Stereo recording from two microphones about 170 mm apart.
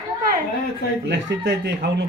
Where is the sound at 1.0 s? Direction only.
80° right.